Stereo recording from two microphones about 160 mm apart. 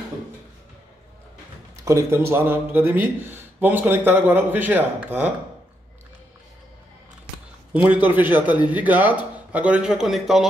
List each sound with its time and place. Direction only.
1.8 s speech: 20° right (ahead or behind)
7.7 s speech: 10° right (ahead or behind)